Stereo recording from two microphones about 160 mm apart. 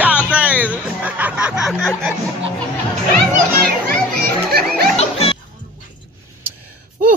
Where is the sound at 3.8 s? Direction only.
75° right (ahead or behind).